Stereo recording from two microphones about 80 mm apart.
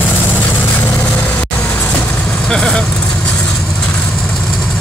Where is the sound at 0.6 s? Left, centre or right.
Left.